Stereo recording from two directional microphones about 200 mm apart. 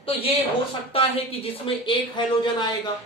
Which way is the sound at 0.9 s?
25° left (ahead or behind).